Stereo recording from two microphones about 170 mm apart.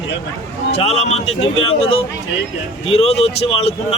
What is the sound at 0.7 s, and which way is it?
A man's voice, 40° left (ahead or behind).